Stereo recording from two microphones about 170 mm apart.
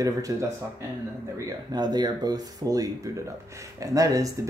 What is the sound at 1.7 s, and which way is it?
Speech, 25° right (ahead or behind).